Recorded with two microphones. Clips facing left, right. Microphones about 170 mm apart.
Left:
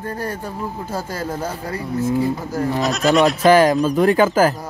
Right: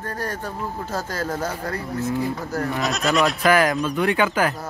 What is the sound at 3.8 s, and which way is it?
Speech, 40° left (ahead or behind).